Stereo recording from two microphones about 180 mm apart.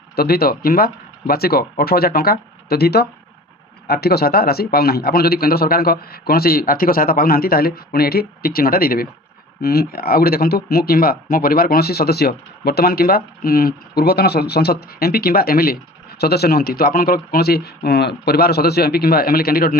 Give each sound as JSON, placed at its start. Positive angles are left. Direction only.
{"t": 0.2, "sound": "speech", "side_deg": 60}